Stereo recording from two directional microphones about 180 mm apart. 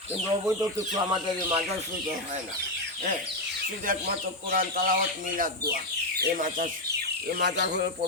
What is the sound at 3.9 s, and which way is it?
Speech, 50° right (ahead or behind).